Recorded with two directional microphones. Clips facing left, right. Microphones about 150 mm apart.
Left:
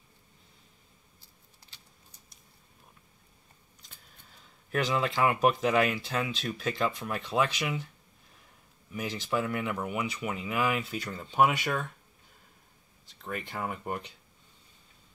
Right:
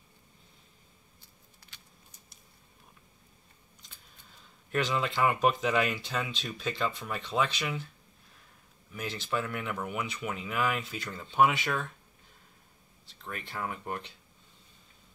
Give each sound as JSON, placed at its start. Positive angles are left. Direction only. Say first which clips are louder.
{"t": 1.7, "sound": "a sound", "louder": "right 1 dB", "side_deg": 30}
{"t": 4.6, "sound": "speech", "louder": "left 1 dB", "side_deg": 5}
{"t": 8.9, "sound": "speech", "louder": "left 2 dB", "side_deg": 10}
{"t": 13.5, "sound": "speech", "louder": "even", "side_deg": 10}